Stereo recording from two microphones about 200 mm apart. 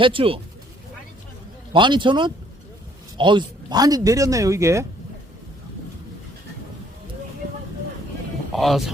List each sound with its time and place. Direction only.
0.0 s speech: 25° right (ahead or behind)
1.7 s speech: 25° right (ahead or behind)
8.5 s speech: centre (ahead or behind)